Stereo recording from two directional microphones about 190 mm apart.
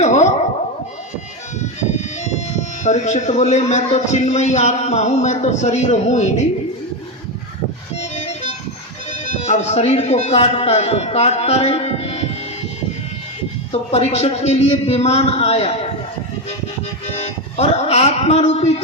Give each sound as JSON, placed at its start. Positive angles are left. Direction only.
{"t": 0.0, "sound": "a sound", "side_deg": 40}
{"t": 2.8, "sound": "a man's voice", "side_deg": 40}
{"t": 7.9, "sound": "music", "side_deg": 35}
{"t": 9.2, "sound": "a man's voice", "side_deg": 35}
{"t": 13.9, "sound": "a man's voice", "side_deg": 35}
{"t": 17.2, "sound": "speech", "side_deg": 35}